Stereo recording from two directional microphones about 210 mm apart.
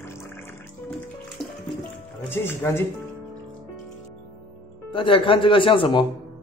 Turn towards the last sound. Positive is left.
turn(degrees=25)  # may be behind; listen again after turning